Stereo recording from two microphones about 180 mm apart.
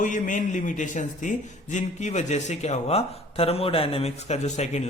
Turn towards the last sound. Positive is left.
turn(degrees=40)  # may be behind; listen again after turning